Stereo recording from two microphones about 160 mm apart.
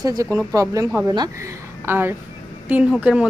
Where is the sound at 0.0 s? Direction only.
20° right (ahead or behind).